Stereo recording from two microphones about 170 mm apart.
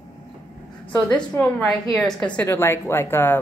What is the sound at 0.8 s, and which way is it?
A woman's voice, 10° left (ahead or behind).